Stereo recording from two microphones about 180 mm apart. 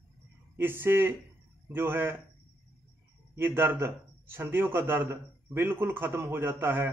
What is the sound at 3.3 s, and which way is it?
A man's voice, 10° right (ahead or behind).